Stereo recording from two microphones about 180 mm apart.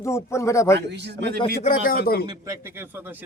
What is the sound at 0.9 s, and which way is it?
Speech, 70° right (ahead or behind).